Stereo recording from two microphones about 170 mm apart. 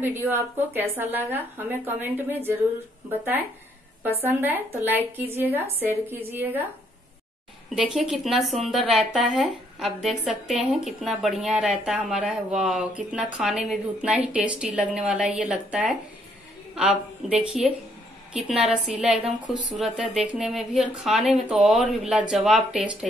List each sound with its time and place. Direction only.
0.0 s speech: 15° right (ahead or behind)
7.7 s speech: centre (ahead or behind)
19.4 s speech: 45° left (ahead or behind)
19.7 s speech: centre (ahead or behind)